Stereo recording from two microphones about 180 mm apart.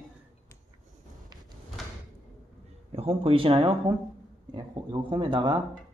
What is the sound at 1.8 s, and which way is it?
Door, centre (ahead or behind).